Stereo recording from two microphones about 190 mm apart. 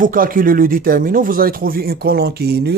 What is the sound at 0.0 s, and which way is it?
Speech, 45° right (ahead or behind).